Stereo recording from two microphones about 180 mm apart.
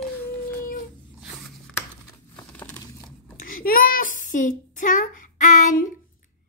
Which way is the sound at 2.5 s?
5° left (ahead or behind).